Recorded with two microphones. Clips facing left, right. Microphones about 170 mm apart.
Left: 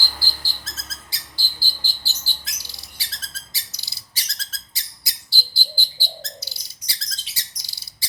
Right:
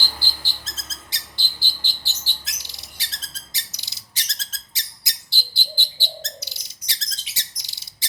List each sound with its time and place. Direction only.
0.0 s bird: 20° right (ahead or behind)